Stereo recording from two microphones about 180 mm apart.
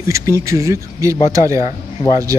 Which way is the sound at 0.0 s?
15° right (ahead or behind).